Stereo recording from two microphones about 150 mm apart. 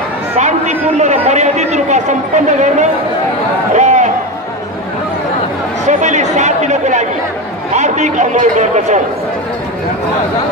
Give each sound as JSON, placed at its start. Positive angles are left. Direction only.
{"t": 0.4, "sound": "a man's voice", "side_deg": -50}
{"t": 3.7, "sound": "a sound", "side_deg": -55}
{"t": 5.9, "sound": "chatter", "side_deg": -55}
{"t": 7.7, "sound": "a man's voice", "side_deg": -50}